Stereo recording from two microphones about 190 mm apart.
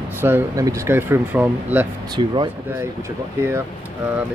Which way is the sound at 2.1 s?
25° right (ahead or behind).